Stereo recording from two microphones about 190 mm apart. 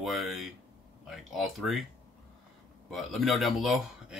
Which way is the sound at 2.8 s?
Centre (ahead or behind).